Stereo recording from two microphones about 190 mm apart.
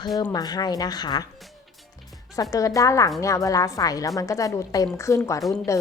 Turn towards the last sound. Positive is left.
turn(degrees=15)  # may be behind; listen again after turning